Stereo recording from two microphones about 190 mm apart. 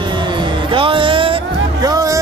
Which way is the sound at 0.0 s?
25° right (ahead or behind).